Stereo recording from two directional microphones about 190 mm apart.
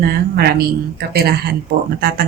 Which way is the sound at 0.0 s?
50° right (ahead or behind).